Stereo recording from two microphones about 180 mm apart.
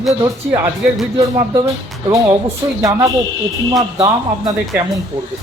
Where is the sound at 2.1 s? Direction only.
15° right (ahead or behind).